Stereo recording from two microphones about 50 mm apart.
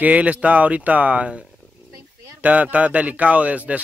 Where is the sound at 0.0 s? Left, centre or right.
Right.